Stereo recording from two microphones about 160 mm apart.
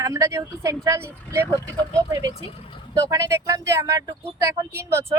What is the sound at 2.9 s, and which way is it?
Speech, 20° right (ahead or behind).